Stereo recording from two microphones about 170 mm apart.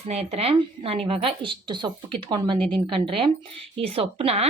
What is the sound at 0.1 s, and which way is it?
Speech, 40° right (ahead or behind).